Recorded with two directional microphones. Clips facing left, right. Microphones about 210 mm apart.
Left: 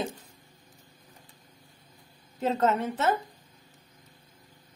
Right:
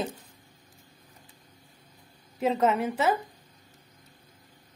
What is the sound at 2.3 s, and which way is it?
Speech, 10° right (ahead or behind).